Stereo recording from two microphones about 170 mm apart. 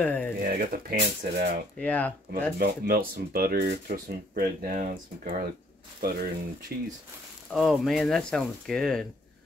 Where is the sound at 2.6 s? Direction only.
60° right (ahead or behind).